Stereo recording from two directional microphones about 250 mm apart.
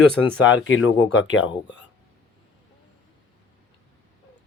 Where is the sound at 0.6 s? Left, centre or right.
Left.